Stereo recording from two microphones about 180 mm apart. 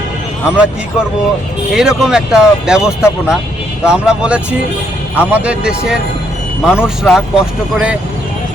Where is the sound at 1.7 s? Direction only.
5° right (ahead or behind).